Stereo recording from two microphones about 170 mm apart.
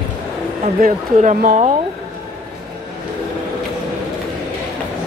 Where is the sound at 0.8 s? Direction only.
50° right (ahead or behind).